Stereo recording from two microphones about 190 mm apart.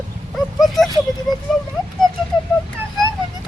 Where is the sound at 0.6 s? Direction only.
Centre (ahead or behind).